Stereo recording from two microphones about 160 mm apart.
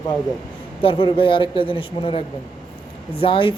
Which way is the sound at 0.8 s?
35° left (ahead or behind).